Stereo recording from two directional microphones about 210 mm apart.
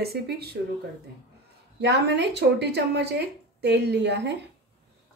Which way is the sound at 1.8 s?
55° right (ahead or behind).